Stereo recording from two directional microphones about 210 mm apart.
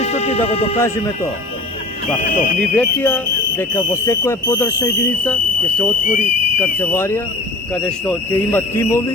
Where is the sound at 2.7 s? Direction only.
5° left (ahead or behind).